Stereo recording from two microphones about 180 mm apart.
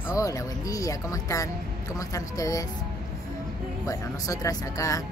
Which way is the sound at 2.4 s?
20° left (ahead or behind).